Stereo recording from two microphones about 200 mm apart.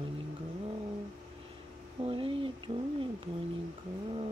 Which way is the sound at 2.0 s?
25° right (ahead or behind).